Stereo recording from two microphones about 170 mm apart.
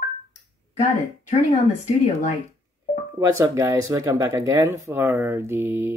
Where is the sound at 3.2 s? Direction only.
15° right (ahead or behind).